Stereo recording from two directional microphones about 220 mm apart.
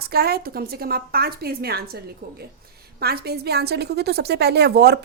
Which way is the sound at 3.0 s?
45° right (ahead or behind).